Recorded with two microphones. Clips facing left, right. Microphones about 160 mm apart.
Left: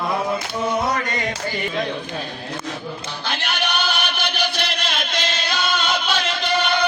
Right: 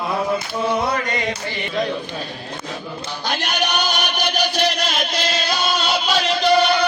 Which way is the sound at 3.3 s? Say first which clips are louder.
Right 3 dB; 40° right (ahead or behind).